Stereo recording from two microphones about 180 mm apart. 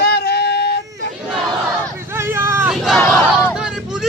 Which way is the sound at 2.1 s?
15° right (ahead or behind).